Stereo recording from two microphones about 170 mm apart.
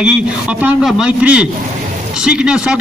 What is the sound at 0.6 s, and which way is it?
A man's voice, 5° right (ahead or behind).